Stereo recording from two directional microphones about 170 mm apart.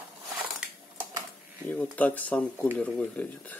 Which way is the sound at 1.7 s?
10° left (ahead or behind).